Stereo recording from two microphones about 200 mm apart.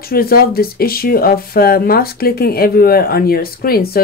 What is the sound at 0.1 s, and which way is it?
Speech, 50° left (ahead or behind).